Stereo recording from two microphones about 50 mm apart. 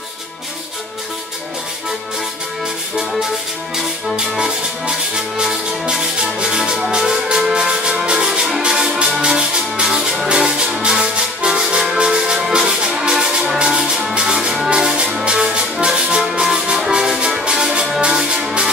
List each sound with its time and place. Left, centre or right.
3.0 s music: centre
4.4 s music: centre